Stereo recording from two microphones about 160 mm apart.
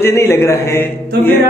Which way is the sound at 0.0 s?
15° left (ahead or behind).